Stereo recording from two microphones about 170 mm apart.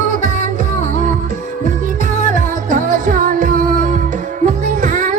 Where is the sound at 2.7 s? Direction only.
50° right (ahead or behind).